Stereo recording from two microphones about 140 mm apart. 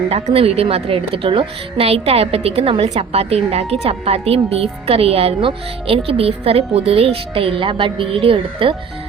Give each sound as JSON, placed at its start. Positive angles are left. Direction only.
{"t": 0.1, "sound": "a woman's voice", "side_deg": -45}